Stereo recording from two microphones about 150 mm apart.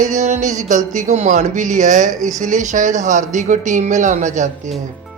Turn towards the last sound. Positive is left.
turn(degrees=-55)  # may be behind; listen again after turning